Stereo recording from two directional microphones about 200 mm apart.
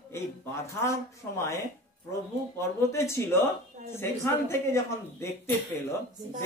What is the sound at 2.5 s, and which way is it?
Speech, 15° left (ahead or behind).